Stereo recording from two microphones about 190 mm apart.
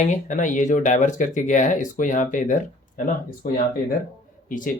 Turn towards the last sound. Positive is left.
turn(degrees=45)  # may be behind; listen again after turning